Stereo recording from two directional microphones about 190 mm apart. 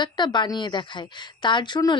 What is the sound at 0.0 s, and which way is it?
Speech, 25° left (ahead or behind).